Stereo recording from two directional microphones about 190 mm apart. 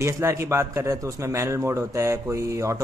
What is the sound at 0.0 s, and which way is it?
A man's voice, 15° right (ahead or behind).